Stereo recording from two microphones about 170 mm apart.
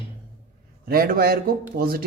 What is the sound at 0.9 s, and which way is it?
A man's voice, 60° right (ahead or behind).